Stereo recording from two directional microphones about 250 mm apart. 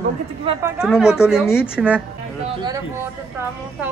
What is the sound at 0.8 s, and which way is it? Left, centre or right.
A woman's voice, centre.